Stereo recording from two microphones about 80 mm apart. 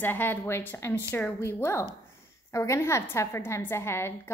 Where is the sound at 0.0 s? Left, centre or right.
Left.